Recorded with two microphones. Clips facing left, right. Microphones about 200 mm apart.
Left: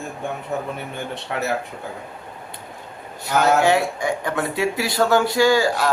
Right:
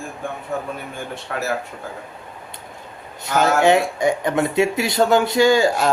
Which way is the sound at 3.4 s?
20° right (ahead or behind).